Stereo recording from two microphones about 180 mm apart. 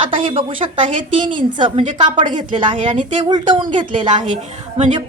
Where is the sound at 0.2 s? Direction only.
30° right (ahead or behind).